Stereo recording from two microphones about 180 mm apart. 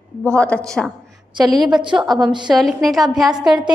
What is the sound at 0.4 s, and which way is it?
Speech, 5° left (ahead or behind).